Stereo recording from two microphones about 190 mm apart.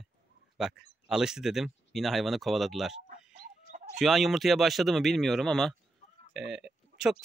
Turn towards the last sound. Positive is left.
turn(degrees=-5)  # may be behind; listen again after turning